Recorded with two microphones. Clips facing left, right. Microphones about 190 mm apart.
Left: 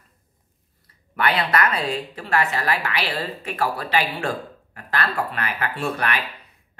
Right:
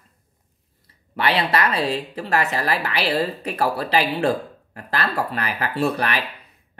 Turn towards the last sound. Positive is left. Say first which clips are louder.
# right 3 dB
turn(degrees=-35)  # may be behind; listen again after turning